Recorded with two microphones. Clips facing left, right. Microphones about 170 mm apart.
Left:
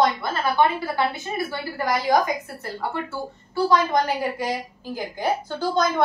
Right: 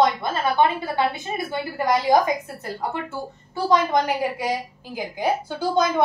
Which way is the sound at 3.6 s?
15° right (ahead or behind).